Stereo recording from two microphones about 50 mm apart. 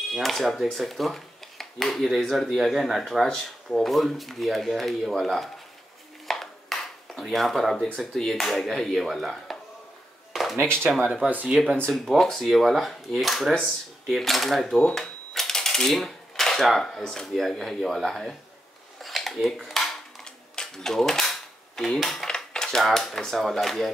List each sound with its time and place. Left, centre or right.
0.1 s speech: centre
6.2 s a sound: centre
7.7 s speech: centre
10.3 s a sound: centre
10.9 s speech: centre
11.5 s speech: right
12.0 s speech: centre
15.0 s typewriter: centre
17.3 s speech: centre
18.9 s dishes: centre
19.8 s cap gun: centre
22.8 s speech: centre